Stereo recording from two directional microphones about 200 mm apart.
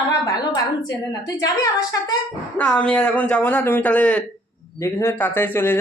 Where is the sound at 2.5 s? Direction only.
5° left (ahead or behind).